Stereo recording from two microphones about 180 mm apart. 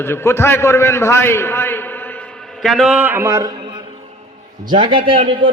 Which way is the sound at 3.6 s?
25° right (ahead or behind).